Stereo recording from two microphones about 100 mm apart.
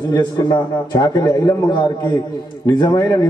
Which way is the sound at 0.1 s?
40° left (ahead or behind).